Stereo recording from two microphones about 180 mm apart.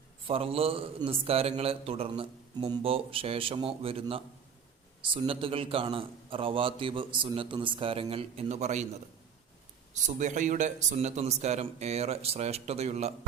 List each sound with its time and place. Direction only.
0.3 s a man's voice: 30° right (ahead or behind)
9.9 s a man's voice: 45° right (ahead or behind)